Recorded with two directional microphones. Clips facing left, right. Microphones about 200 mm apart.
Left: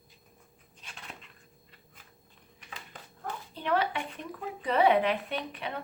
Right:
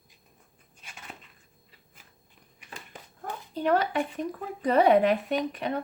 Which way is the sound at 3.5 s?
40° right (ahead or behind).